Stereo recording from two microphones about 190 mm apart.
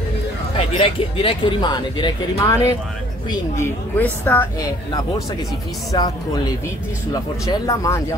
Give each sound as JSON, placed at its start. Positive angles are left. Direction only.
{"t": 0.7, "sound": "speech", "side_deg": 30}